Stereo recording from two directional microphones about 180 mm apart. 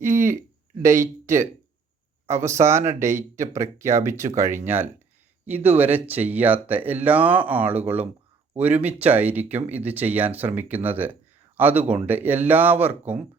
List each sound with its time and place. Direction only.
0.0 s speech: 15° right (ahead or behind)